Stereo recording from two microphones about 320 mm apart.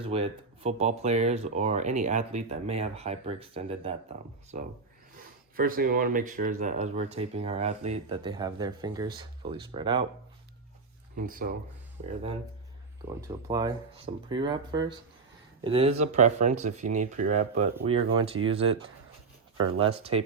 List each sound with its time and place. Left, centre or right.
0.0 s speech: centre
11.2 s speech: right
13.1 s speech: centre
19.8 s speech: centre